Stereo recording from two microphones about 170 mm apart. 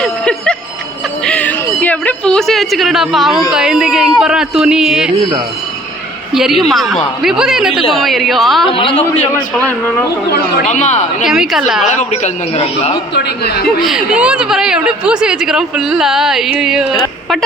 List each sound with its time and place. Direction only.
0.0 s a sound: 5° left (ahead or behind)
3.5 s speech: 5° right (ahead or behind)
6.3 s speech: centre (ahead or behind)
8.7 s a man's voice: 30° left (ahead or behind)
10.7 s a man's voice: 45° left (ahead or behind)
11.3 s speech: centre (ahead or behind)
11.9 s a man's voice: 45° left (ahead or behind)
13.1 s a woman's voice: 70° left (ahead or behind)
13.8 s speech: 5° right (ahead or behind)